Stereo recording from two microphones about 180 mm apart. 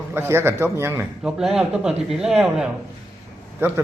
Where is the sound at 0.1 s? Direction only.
15° right (ahead or behind).